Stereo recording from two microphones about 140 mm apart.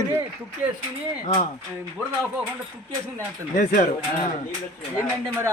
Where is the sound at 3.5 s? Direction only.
80° left.